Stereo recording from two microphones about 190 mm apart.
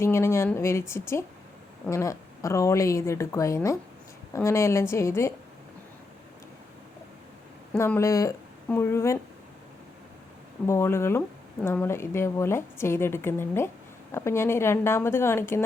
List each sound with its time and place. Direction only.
0.0 s a woman's voice: 15° left (ahead or behind)
7.7 s a woman's voice: 10° left (ahead or behind)
10.7 s a woman's voice: 15° left (ahead or behind)